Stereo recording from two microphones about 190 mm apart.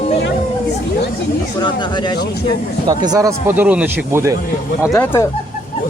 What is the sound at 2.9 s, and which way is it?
Speech, 20° right (ahead or behind).